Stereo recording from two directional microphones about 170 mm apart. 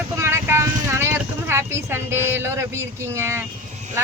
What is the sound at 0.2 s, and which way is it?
Vehicle, 15° right (ahead or behind).